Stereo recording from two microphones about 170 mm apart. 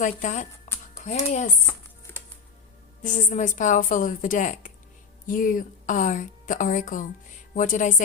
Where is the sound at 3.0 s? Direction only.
45° left (ahead or behind).